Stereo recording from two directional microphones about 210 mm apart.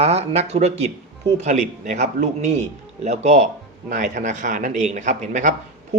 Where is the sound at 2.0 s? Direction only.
35° right (ahead or behind).